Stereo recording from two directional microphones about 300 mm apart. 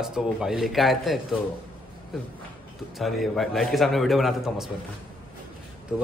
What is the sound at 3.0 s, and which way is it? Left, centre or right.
A man's voice, centre.